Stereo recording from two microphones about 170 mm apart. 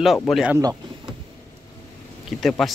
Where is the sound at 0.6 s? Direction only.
20° right (ahead or behind).